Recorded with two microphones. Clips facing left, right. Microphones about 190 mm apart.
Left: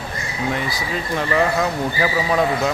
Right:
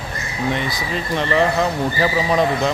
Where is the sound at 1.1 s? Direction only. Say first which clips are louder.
Right 1 dB; 5° left (ahead or behind).